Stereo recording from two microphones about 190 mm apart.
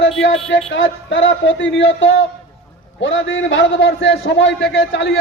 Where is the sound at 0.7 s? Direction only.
80° left.